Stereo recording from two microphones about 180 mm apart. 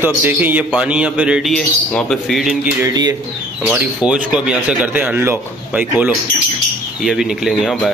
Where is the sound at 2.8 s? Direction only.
20° right (ahead or behind).